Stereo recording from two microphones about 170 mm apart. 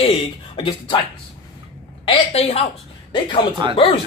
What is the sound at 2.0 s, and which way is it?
Speech, 35° left (ahead or behind).